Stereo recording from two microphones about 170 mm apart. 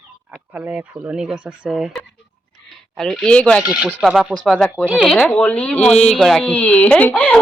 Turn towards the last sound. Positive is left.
turn(degrees=10)  # may be behind; listen again after turning